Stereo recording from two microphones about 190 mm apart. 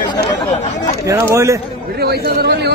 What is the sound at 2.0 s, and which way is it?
Speech, 55° right (ahead or behind).